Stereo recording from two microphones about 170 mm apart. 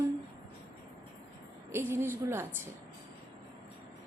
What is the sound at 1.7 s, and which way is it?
Speech, 15° right (ahead or behind).